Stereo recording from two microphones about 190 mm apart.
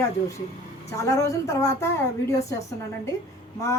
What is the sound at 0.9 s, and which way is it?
A woman's voice, 15° left (ahead or behind).